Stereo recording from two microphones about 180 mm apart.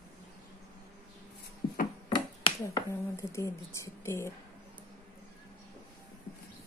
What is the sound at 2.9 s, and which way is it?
Speech, 15° left (ahead or behind).